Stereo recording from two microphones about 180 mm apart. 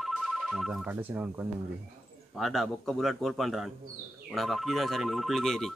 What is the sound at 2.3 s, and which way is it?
Speech, centre (ahead or behind).